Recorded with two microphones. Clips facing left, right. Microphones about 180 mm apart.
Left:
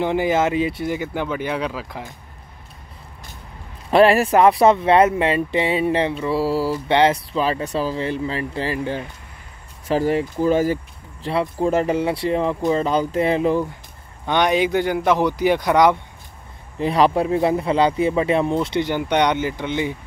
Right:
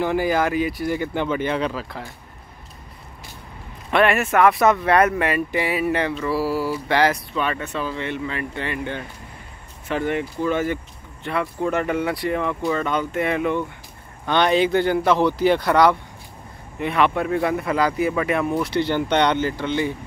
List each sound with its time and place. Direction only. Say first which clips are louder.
0.0 s speech: left 1 dB; 20° left (ahead or behind)
0.9 s speech: right 1 dB; 10° left (ahead or behind)
3.9 s speech: left 4 dB; 35° left (ahead or behind)
14.2 s speech: even; 15° left (ahead or behind)
16.8 s speech: left 3 dB; 35° left (ahead or behind); by 19.9 s 15° left (ahead or behind)